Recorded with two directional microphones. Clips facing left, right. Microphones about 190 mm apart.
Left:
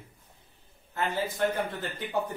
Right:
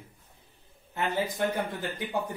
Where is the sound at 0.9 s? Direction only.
15° right (ahead or behind).